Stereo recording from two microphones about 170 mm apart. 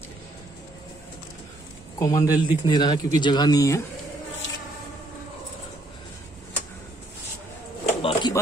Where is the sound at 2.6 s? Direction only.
25° left (ahead or behind).